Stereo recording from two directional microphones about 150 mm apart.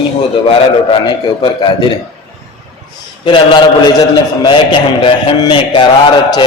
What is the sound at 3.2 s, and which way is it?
A man's voice, 30° left (ahead or behind).